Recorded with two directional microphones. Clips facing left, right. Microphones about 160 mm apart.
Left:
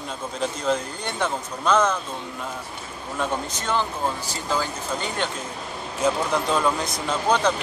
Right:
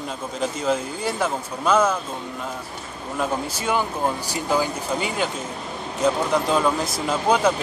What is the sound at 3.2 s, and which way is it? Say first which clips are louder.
Speech: right 2 dB; 5° right (ahead or behind).